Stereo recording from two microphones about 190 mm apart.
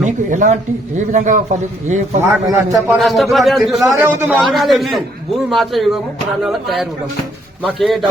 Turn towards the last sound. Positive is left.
turn(degrees=0)  # may be behind; listen again after turning